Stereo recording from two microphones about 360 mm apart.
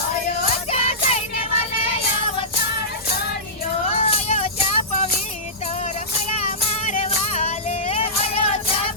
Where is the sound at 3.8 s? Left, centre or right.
Centre.